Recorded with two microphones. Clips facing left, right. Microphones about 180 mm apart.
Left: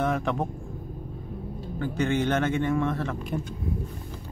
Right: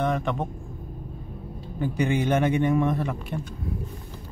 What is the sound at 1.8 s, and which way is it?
A man's voice, 15° right (ahead or behind).